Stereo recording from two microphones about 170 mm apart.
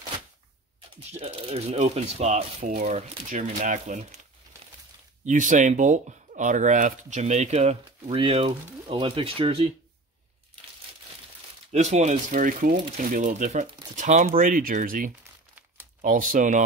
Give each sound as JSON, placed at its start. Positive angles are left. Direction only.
{"t": 0.9, "sound": "speech", "side_deg": -35}
{"t": 5.2, "sound": "speech", "side_deg": -50}
{"t": 11.7, "sound": "speech", "side_deg": -40}